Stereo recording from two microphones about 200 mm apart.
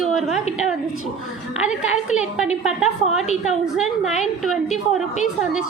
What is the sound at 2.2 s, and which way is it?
Speech, 5° right (ahead or behind).